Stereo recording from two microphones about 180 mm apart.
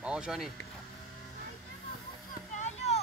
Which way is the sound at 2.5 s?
40° left (ahead or behind).